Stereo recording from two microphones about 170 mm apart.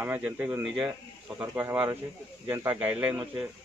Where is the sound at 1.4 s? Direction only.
20° right (ahead or behind).